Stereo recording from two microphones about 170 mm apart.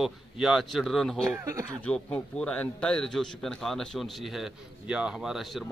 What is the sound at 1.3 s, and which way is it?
Speech, 15° right (ahead or behind).